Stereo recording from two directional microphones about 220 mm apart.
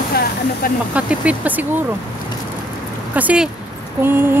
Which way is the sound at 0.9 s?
5° right (ahead or behind).